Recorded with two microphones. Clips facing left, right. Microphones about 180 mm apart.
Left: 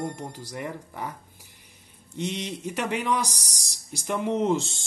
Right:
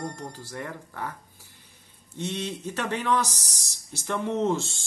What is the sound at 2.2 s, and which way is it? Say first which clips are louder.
Speech: left 1 dB; 15° left (ahead or behind).